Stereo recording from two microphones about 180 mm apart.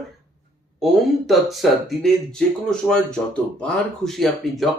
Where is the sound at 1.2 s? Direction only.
Centre (ahead or behind).